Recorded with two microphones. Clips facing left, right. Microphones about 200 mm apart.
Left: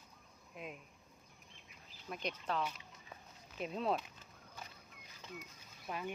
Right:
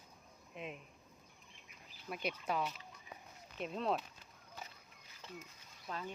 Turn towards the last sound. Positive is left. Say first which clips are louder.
# left 2 dB
turn(degrees=10)  # may be behind; listen again after turning